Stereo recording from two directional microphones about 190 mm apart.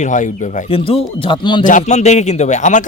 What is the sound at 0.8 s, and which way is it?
Speech, 30° left (ahead or behind).